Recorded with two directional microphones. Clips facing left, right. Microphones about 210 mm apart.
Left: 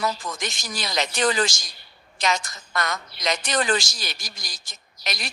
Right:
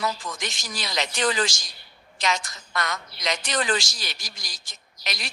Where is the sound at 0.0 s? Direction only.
45° left (ahead or behind).